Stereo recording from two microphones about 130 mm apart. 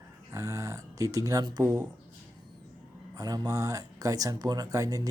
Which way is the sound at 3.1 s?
30° right (ahead or behind).